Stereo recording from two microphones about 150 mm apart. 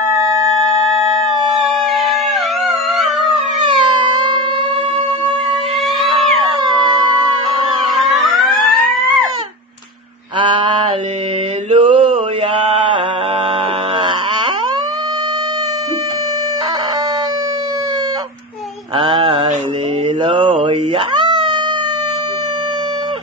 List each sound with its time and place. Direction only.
3.6 s a sound: 30° right (ahead or behind)
7.8 s music: centre (ahead or behind)
10.4 s a sound: 35° right (ahead or behind)
11.7 s mantra: 35° right (ahead or behind)
18.9 s mantra: 30° right (ahead or behind)
21.2 s cat: 30° right (ahead or behind)